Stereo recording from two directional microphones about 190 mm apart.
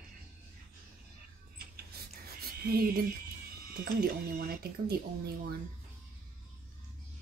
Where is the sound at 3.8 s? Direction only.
55° right (ahead or behind).